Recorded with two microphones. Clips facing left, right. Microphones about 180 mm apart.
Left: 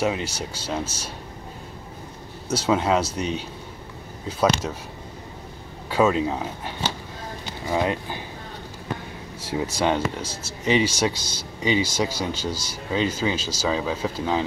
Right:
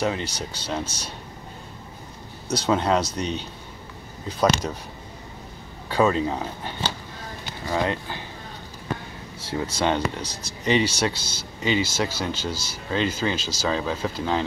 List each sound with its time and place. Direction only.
0.0 s speech: 10° left (ahead or behind)
2.4 s speech: 5° left (ahead or behind)
5.9 s speech: 5° left (ahead or behind)
9.5 s speech: 10° left (ahead or behind)